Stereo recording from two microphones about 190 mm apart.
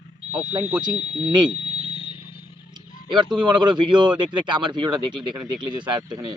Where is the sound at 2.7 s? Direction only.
25° right (ahead or behind).